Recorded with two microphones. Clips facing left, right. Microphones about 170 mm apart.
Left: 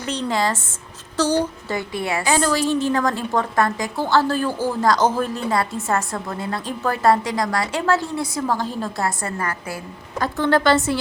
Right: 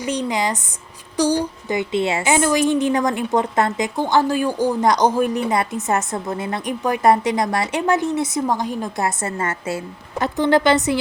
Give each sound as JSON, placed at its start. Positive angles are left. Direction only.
{"t": 0.0, "sound": "a woman's voice", "side_deg": -15}